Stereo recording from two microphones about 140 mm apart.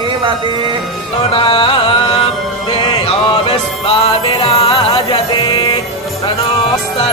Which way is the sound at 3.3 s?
40° left (ahead or behind).